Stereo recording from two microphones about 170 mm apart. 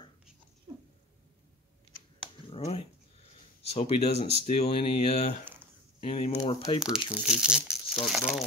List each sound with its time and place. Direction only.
0.7 s cat: 30° right (ahead or behind)
2.5 s speech: 35° left (ahead or behind)
6.8 s speech: 5° right (ahead or behind)